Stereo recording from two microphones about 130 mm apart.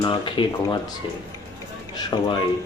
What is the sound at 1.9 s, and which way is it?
Speech, 30° left (ahead or behind).